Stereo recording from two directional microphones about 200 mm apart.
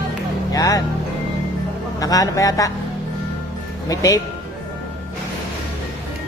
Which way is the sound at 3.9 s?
15° left (ahead or behind).